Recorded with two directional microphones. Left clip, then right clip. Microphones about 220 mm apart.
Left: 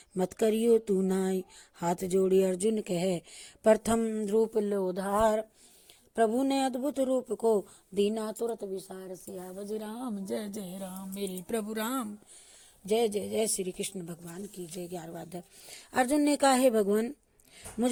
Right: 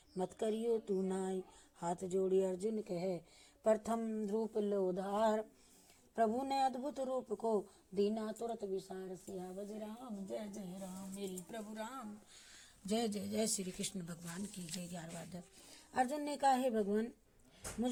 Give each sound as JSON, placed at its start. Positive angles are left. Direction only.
{"t": 0.2, "sound": "a woman's voice", "side_deg": 25}
{"t": 11.2, "sound": "a sound", "side_deg": 40}
{"t": 12.9, "sound": "speech", "side_deg": 25}
{"t": 14.9, "sound": "speech", "side_deg": 25}